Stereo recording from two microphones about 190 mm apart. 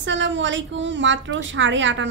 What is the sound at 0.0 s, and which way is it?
A woman's voice, 75° right (ahead or behind).